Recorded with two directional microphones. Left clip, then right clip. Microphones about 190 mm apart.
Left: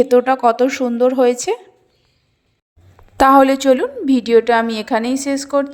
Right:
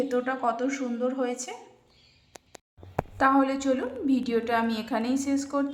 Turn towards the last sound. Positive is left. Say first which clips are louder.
# left 10 dB
turn(degrees=35)  # may be behind; listen again after turning